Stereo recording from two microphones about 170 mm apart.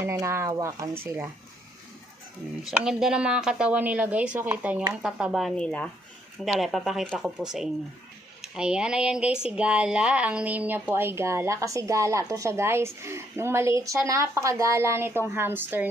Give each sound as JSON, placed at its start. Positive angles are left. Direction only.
{"t": 0.0, "sound": "speech", "side_deg": -15}
{"t": 2.6, "sound": "a woman's voice", "side_deg": -5}